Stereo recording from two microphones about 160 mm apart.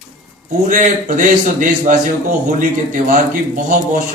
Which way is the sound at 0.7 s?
50° right (ahead or behind).